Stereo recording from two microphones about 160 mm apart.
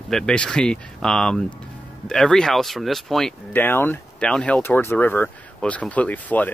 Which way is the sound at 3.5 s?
15° left (ahead or behind).